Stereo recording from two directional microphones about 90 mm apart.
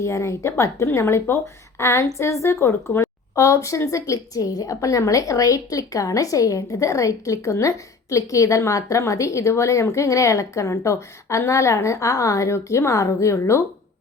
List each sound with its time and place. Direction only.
0.0 s a woman's voice: 35° left (ahead or behind)